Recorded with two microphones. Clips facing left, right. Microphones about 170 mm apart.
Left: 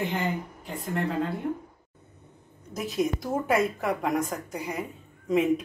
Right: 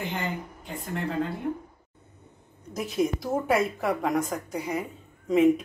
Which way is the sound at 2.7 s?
Centre (ahead or behind).